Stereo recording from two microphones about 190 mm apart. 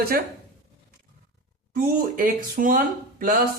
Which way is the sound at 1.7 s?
45° right (ahead or behind).